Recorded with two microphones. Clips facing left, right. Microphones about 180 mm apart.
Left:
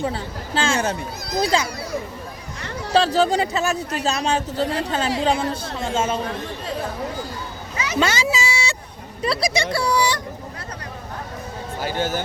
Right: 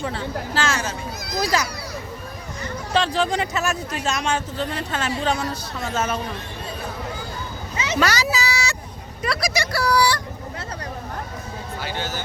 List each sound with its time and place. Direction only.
0.0 s speech: 30° left (ahead or behind)
0.8 s speech: 60° left (ahead or behind)
1.4 s speech: 25° left (ahead or behind)
2.9 s speech: 35° left (ahead or behind)
7.9 s a sound: 25° left (ahead or behind)
9.2 s speech: 30° left (ahead or behind)
11.8 s speech: 45° left (ahead or behind)